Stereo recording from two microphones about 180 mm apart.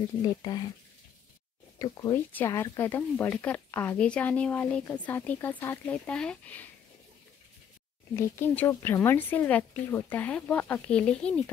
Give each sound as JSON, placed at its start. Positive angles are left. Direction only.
{"t": 0.2, "sound": "speech", "side_deg": 20}
{"t": 1.8, "sound": "speech", "side_deg": 20}
{"t": 8.2, "sound": "speech", "side_deg": 15}